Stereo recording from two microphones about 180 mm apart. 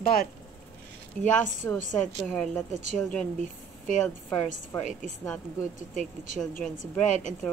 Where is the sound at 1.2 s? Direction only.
45° left (ahead or behind).